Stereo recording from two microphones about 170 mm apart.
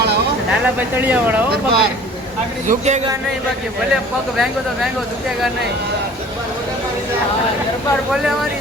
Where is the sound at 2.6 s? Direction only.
45° right (ahead or behind).